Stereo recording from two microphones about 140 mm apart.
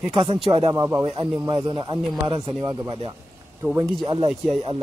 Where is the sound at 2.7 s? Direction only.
25° right (ahead or behind).